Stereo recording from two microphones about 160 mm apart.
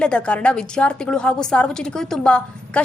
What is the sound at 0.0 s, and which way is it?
A woman's voice, 5° left (ahead or behind).